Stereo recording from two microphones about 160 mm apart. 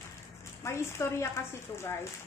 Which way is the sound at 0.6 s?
15° left (ahead or behind).